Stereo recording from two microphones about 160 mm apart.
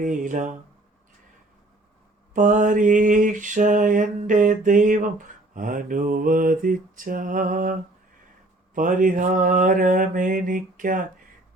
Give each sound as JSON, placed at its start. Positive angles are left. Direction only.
{"t": 0.0, "sound": "mantra", "side_deg": -55}
{"t": 2.3, "sound": "mantra", "side_deg": -55}